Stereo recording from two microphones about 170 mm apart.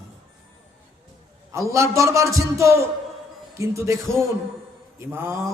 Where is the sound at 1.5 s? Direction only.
15° right (ahead or behind).